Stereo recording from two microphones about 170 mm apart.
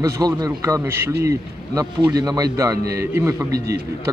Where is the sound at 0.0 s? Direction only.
20° right (ahead or behind).